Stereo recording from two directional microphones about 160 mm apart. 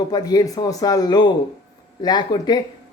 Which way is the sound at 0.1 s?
25° left (ahead or behind).